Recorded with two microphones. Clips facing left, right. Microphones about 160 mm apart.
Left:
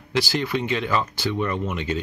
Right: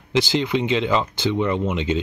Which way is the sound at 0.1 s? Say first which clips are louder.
Right 3 dB; 20° right (ahead or behind).